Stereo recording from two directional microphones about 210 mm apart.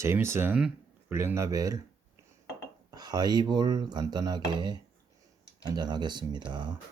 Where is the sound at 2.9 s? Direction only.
20° right (ahead or behind).